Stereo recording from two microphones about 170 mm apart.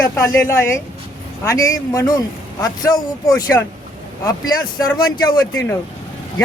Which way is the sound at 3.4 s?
20° left (ahead or behind).